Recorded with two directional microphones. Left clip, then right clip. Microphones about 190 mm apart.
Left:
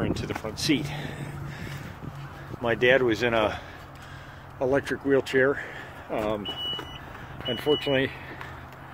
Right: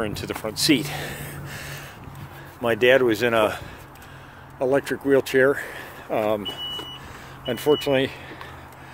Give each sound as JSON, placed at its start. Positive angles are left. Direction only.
{"t": 0.0, "sound": "speech", "side_deg": -30}
{"t": 7.4, "sound": "speech", "side_deg": -40}